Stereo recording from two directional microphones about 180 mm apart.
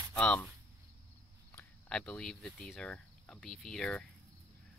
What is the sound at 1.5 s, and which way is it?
Speech, 5° left (ahead or behind).